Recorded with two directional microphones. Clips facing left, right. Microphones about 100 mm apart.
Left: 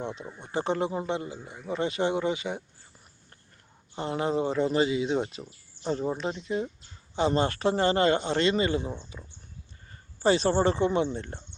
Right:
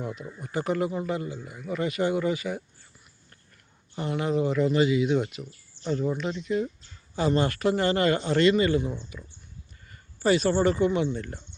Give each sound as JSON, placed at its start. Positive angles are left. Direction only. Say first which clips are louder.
{"t": 0.0, "sound": "speech", "louder": "right 1 dB", "side_deg": 25}
{"t": 3.9, "sound": "speech", "louder": "right 1 dB", "side_deg": 30}